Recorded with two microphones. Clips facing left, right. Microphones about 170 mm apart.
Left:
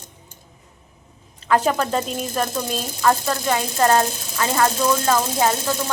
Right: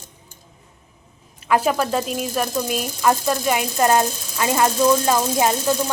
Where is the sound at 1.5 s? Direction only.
5° right (ahead or behind).